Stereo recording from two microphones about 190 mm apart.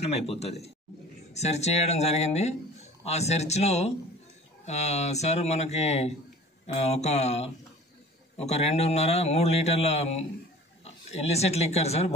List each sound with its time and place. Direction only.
0.0 s speech: 35° left (ahead or behind)